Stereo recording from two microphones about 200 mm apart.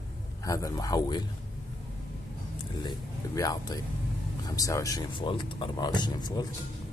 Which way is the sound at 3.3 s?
20° left (ahead or behind).